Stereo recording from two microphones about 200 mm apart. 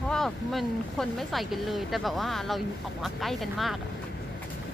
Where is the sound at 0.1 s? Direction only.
Centre (ahead or behind).